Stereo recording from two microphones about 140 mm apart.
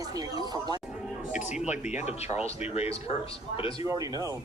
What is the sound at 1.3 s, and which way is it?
Speech, 60° left (ahead or behind).